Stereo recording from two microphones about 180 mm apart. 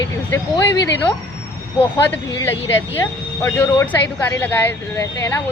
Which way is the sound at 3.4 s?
10° left (ahead or behind).